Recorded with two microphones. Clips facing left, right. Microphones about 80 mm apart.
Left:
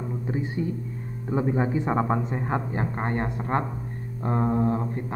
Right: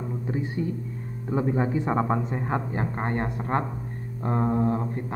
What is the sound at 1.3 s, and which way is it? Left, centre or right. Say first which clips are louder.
Speech: even; centre.